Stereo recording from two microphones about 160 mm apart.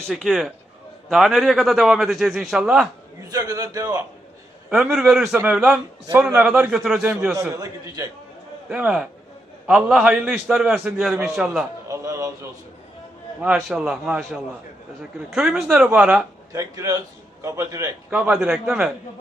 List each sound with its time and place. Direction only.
0.1 s a man's voice: centre (ahead or behind)
3.3 s a man's voice: 20° right (ahead or behind)
4.7 s a man's voice: 5° right (ahead or behind)
7.5 s a man's voice: 20° right (ahead or behind)
8.7 s a man's voice: 5° right (ahead or behind)
11.9 s a sound: 20° right (ahead or behind)
13.4 s a man's voice: 5° right (ahead or behind)
16.5 s a man's voice: 20° right (ahead or behind)
18.2 s a man's voice: 5° right (ahead or behind)